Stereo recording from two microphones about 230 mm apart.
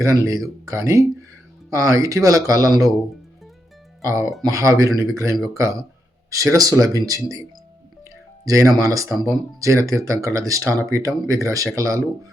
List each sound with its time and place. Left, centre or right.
0.0 s speech: centre
4.0 s speech: centre
4.3 s speech: centre
4.5 s speech: centre
8.4 s speech: centre